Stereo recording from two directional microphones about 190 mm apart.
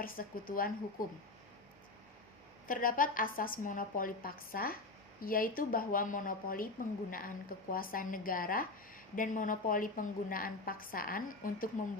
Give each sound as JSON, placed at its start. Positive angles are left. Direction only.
{"t": 0.0, "sound": "a woman's voice", "side_deg": 50}
{"t": 2.6, "sound": "a woman's voice", "side_deg": 45}